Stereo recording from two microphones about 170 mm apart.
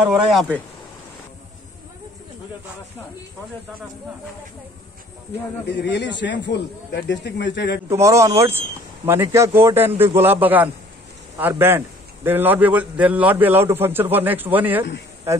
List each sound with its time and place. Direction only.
0.0 s speech: centre (ahead or behind)
5.8 s speech: 90° left
7.9 s a man's voice: 15° right (ahead or behind)